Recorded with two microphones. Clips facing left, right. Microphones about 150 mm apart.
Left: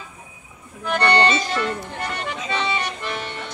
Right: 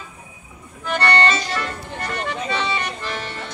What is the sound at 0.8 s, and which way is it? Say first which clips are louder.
Music: left 1 dB; 15° left (ahead or behind).